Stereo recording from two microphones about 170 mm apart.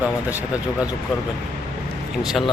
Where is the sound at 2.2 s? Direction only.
Centre (ahead or behind).